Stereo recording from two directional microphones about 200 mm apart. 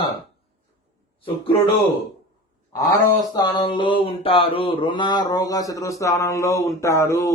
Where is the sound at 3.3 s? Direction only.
20° left (ahead or behind).